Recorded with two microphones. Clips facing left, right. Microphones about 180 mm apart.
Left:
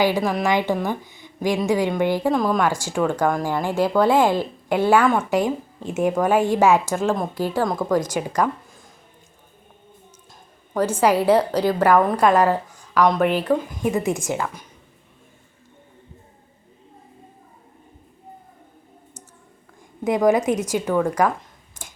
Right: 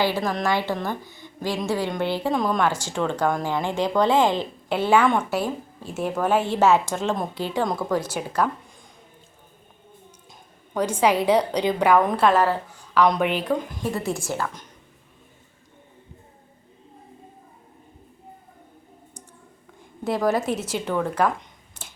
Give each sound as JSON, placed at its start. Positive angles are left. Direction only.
{"t": 0.2, "sound": "speech", "side_deg": 10}
{"t": 2.3, "sound": "a woman's voice", "side_deg": 0}
{"t": 7.8, "sound": "speech", "side_deg": 10}
{"t": 10.8, "sound": "speech", "side_deg": 10}
{"t": 13.5, "sound": "speech", "side_deg": 15}
{"t": 20.1, "sound": "speech", "side_deg": 15}